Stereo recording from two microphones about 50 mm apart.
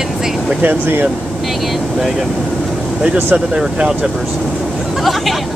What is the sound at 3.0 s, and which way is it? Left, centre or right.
Speech, right.